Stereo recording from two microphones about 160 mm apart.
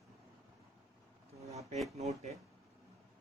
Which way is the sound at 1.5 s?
40° right (ahead or behind).